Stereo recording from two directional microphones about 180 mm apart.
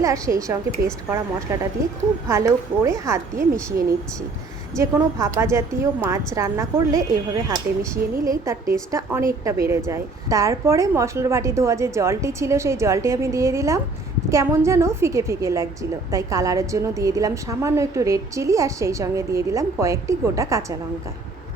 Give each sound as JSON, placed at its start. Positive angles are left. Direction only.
{"t": 0.0, "sound": "a woman's voice", "side_deg": -20}
{"t": 2.2, "sound": "a woman's voice", "side_deg": -15}